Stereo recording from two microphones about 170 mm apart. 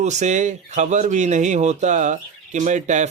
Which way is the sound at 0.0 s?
45° right (ahead or behind).